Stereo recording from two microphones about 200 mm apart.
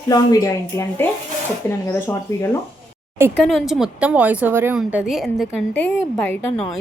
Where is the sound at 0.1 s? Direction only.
20° left (ahead or behind).